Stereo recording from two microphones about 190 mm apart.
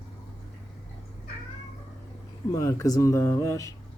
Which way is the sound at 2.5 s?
15° left (ahead or behind).